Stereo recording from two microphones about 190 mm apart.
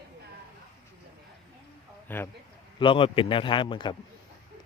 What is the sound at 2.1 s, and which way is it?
Speech, 10° left (ahead or behind).